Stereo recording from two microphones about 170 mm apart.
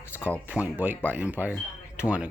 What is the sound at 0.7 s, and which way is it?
Speech, 10° right (ahead or behind).